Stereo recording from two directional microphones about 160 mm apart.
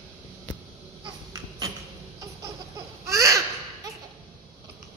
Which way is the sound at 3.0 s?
20° right (ahead or behind).